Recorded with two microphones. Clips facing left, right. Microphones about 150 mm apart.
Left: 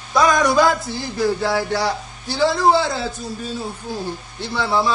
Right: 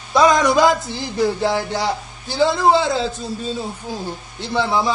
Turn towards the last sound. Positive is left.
turn(degrees=-20)  # may be behind; listen again after turning